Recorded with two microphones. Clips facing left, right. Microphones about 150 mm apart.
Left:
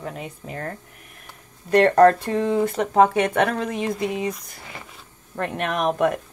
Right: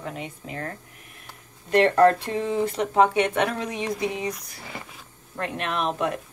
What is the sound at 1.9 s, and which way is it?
Speech, 50° left (ahead or behind).